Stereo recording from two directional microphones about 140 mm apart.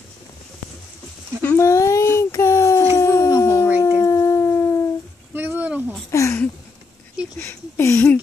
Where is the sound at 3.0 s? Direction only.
20° left (ahead or behind).